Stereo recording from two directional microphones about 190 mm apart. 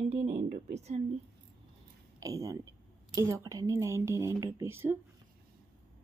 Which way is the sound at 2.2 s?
15° right (ahead or behind).